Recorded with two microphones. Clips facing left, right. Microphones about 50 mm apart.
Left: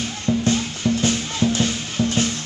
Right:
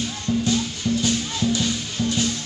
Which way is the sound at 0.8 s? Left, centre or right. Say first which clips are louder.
Left 3 dB; left.